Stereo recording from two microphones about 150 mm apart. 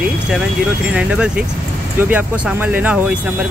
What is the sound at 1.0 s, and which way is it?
Speech, 10° right (ahead or behind).